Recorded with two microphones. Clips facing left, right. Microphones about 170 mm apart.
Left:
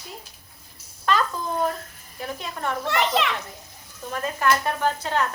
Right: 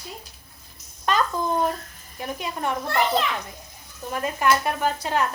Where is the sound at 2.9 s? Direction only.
75° left (ahead or behind).